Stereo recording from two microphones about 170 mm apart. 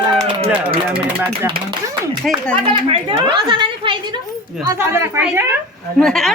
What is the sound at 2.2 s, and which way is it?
Speech, centre (ahead or behind).